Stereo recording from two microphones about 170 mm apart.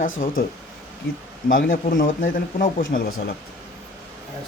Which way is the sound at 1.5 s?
55° left (ahead or behind).